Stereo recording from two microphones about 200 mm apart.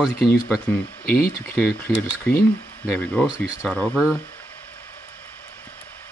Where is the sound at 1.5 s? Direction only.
10° left (ahead or behind); by 3.7 s 5° right (ahead or behind).